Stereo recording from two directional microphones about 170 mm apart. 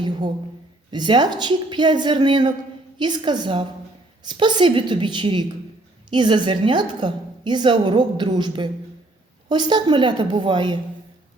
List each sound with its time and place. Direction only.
0.9 s a woman's voice: 25° right (ahead or behind)